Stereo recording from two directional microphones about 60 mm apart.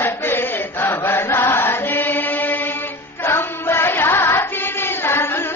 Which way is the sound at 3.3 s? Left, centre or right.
Left.